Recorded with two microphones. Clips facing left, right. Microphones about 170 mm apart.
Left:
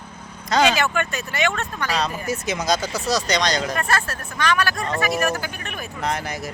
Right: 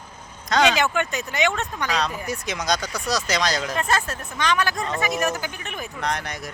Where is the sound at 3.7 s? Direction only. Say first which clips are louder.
Even; 20° right (ahead or behind).